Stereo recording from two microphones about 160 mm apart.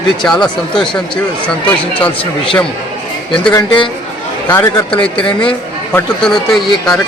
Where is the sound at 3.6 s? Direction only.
30° left (ahead or behind).